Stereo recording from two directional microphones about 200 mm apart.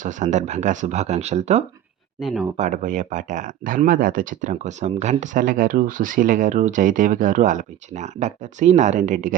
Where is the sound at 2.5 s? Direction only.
35° right (ahead or behind).